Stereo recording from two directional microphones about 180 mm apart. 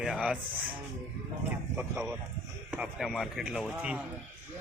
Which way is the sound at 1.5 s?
10° right (ahead or behind).